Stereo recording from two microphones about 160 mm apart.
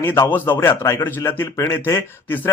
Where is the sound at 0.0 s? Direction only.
15° left (ahead or behind).